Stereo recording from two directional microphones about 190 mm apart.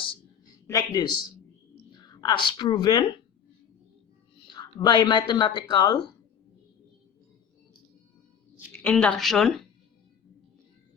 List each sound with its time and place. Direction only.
0.0 s a sound: 25° left (ahead or behind)
1.9 s speech: 20° left (ahead or behind)
4.5 s speech: 20° left (ahead or behind)
8.8 s a woman's voice: 5° left (ahead or behind)